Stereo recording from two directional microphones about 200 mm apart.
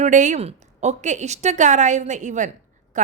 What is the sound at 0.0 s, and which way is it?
A woman's voice, 40° right (ahead or behind).